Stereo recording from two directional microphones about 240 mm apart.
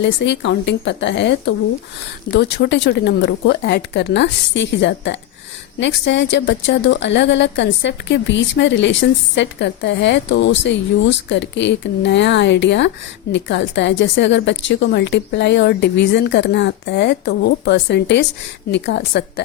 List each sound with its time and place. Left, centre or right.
0.0 s a woman's voice: left